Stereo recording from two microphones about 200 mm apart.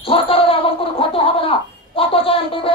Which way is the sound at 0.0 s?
30° left (ahead or behind).